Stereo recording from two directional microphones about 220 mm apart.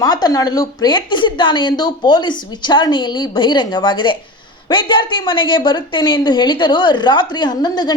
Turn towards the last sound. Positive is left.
turn(degrees=20)  # may be behind; listen again after turning